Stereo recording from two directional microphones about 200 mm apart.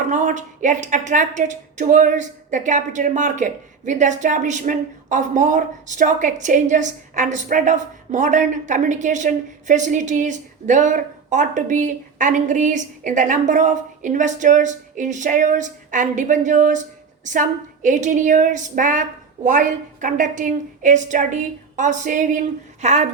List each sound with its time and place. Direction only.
0.1 s a woman's voice: 40° right (ahead or behind)